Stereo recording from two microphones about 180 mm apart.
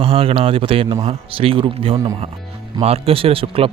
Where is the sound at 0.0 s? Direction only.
30° right (ahead or behind).